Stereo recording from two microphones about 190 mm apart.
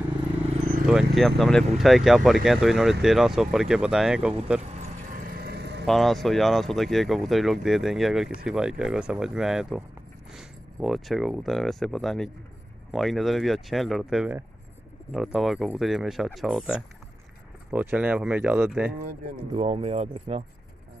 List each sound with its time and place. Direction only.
0.8 s speech: centre (ahead or behind)
4.6 s vehicle: 45° right (ahead or behind)
5.9 s speech: centre (ahead or behind)
19.5 s speech: 30° right (ahead or behind)